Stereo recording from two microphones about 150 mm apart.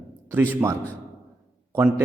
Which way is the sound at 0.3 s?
15° right (ahead or behind).